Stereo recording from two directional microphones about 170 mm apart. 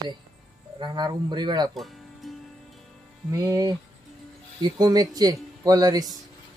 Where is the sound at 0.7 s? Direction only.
25° right (ahead or behind).